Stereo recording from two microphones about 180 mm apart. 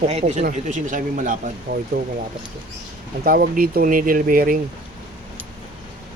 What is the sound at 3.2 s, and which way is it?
Speech, 55° right (ahead or behind).